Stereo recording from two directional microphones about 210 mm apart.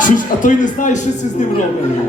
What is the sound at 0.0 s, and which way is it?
Speech, 40° left (ahead or behind).